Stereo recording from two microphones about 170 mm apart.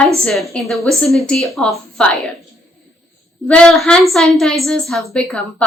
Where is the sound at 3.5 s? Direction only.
5° left (ahead or behind).